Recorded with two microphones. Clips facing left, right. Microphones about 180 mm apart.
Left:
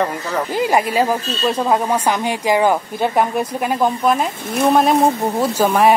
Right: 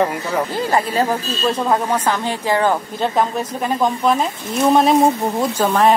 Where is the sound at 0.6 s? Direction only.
15° left (ahead or behind).